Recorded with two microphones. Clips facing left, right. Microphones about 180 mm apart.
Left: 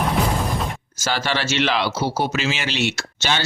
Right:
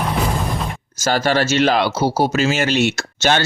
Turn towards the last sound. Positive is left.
turn(degrees=-50)  # may be behind; listen again after turning